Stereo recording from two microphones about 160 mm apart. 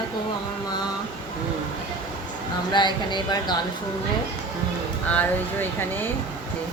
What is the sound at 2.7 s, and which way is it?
Speech, 30° left (ahead or behind).